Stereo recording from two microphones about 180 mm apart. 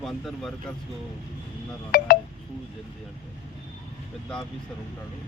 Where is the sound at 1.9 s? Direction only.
55° left (ahead or behind).